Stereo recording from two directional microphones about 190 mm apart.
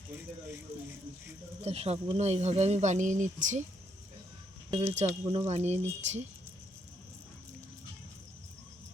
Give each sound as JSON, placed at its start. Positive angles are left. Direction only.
{"t": 1.6, "sound": "speech", "side_deg": -35}
{"t": 4.7, "sound": "speech", "side_deg": -30}
{"t": 5.0, "sound": "speech", "side_deg": -20}
{"t": 5.5, "sound": "speech", "side_deg": -35}